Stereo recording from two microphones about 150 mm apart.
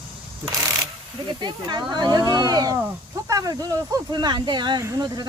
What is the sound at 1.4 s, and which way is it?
Speech, 30° right (ahead or behind).